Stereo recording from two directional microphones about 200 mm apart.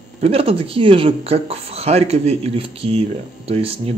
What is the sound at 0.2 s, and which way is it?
Speech, 30° right (ahead or behind).